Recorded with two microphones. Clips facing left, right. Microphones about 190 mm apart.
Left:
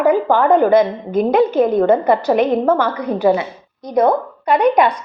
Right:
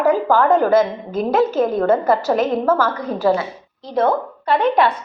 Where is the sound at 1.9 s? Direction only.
Centre (ahead or behind).